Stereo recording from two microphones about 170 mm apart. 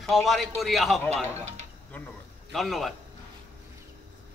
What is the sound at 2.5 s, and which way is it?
Speech, centre (ahead or behind).